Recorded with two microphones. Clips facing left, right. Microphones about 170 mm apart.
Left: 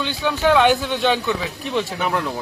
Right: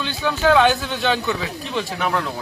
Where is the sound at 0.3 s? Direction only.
5° left (ahead or behind).